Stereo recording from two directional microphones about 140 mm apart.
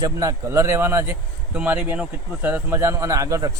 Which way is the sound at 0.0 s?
25° right (ahead or behind).